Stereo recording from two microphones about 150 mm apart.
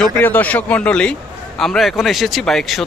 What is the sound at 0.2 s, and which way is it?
Speech, 10° left (ahead or behind).